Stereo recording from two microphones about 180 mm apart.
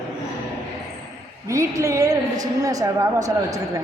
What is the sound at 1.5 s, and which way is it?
A woman's voice, 15° right (ahead or behind).